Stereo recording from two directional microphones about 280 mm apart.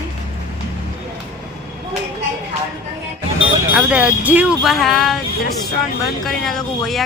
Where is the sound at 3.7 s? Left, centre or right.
Centre.